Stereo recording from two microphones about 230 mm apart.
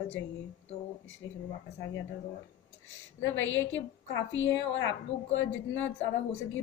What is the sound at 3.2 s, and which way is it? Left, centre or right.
A woman's voice, left.